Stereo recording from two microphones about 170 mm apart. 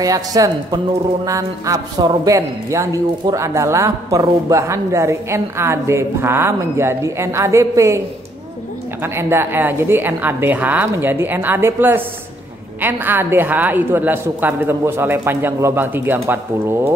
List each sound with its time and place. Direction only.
0.0 s a man's voice: 20° right (ahead or behind)
9.0 s a man's voice: 15° right (ahead or behind)